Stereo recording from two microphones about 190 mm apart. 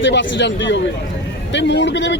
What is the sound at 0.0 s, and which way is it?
Speech, 75° left (ahead or behind).